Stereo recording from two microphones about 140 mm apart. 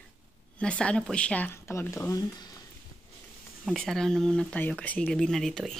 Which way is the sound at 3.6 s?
5° left (ahead or behind).